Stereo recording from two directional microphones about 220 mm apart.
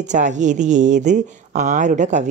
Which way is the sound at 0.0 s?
35° right (ahead or behind).